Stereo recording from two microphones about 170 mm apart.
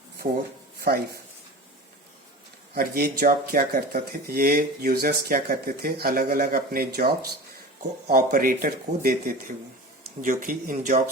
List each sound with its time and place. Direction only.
2.7 s speech: 60° right (ahead or behind)